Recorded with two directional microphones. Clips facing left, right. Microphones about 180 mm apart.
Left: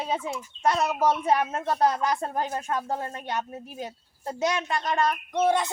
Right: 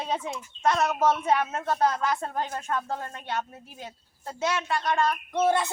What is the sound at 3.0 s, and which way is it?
A woman's voice, 45° left (ahead or behind).